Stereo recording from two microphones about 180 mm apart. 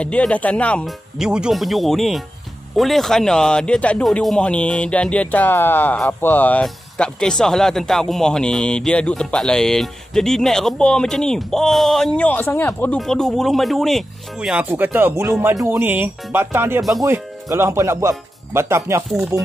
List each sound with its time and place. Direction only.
0.0 s speech: 5° left (ahead or behind); by 19.5 s 20° right (ahead or behind)